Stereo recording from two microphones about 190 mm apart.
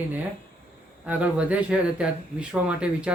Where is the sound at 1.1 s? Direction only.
5° right (ahead or behind).